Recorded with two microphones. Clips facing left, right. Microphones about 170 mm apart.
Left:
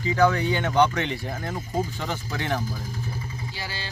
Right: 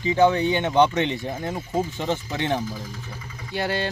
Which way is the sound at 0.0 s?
20° right (ahead or behind).